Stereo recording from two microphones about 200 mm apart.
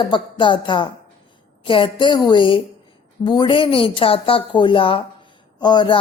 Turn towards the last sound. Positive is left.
turn(degrees=20)  # may be behind; listen again after turning